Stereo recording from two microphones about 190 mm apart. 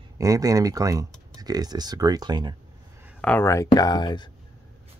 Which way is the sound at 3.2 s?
10° left (ahead or behind).